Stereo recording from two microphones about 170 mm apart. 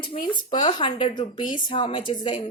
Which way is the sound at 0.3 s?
25° left (ahead or behind).